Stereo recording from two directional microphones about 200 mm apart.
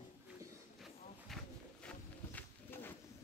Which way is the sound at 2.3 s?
10° left (ahead or behind).